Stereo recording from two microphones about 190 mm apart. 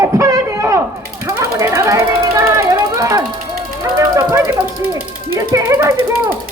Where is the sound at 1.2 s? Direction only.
15° right (ahead or behind).